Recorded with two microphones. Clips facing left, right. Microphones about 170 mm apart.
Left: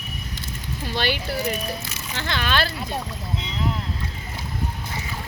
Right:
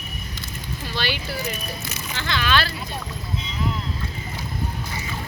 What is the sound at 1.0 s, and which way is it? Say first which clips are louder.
Speech: left 3 dB; 50° left (ahead or behind).